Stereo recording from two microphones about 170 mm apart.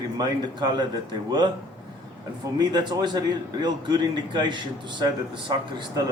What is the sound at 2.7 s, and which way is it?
A man's voice, 25° right (ahead or behind).